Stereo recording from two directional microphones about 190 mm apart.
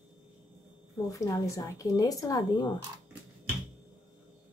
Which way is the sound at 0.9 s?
20° left (ahead or behind).